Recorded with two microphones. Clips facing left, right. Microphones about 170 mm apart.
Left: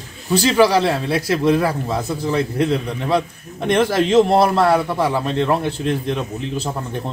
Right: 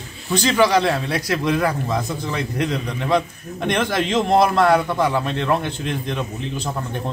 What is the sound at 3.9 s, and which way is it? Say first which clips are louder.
Speech: left 5 dB; 35° left (ahead or behind).